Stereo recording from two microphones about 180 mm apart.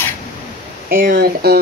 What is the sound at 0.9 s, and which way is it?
Speech, 55° right (ahead or behind).